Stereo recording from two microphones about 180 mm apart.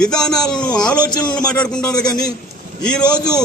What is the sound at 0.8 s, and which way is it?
Speech, 5° left (ahead or behind).